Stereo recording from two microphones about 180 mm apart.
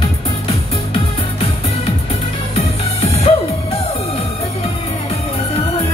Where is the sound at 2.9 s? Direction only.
35° left (ahead or behind).